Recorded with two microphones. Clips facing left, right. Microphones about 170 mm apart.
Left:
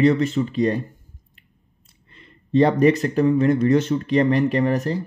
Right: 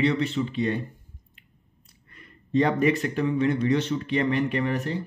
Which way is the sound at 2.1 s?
30° left (ahead or behind).